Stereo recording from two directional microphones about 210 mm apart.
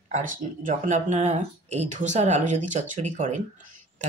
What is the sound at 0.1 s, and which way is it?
Speech, 40° right (ahead or behind).